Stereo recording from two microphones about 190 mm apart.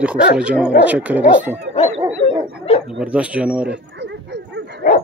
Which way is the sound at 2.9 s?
5° right (ahead or behind).